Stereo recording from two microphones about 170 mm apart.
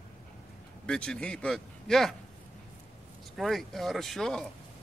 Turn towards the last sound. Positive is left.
turn(degrees=0)  # may be behind; listen again after turning